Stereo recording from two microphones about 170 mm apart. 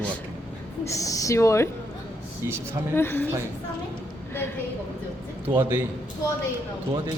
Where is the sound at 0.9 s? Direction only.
20° left (ahead or behind).